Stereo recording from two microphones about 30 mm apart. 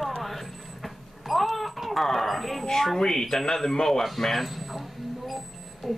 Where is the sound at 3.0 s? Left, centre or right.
Centre.